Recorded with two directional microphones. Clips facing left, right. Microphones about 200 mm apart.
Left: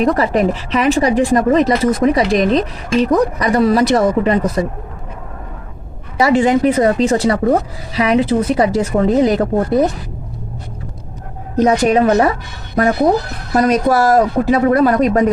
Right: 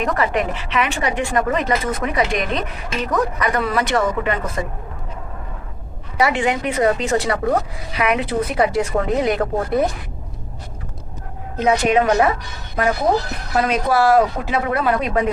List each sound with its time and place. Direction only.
0.0 s a woman's voice: 35° left (ahead or behind)
6.2 s a woman's voice: 30° left (ahead or behind)
11.5 s a woman's voice: 40° left (ahead or behind)
13.5 s a woman's voice: 40° left (ahead or behind)